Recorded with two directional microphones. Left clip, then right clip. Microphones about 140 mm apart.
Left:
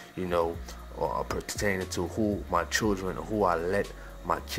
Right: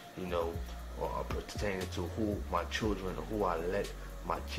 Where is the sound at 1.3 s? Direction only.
30° left (ahead or behind).